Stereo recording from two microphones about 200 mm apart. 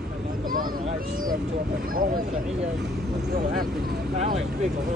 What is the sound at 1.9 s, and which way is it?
Speech, 45° right (ahead or behind).